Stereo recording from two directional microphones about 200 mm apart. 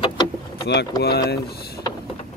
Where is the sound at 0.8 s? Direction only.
55° left (ahead or behind).